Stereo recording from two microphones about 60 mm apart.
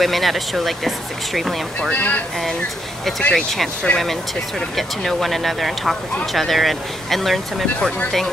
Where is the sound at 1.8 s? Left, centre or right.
Left.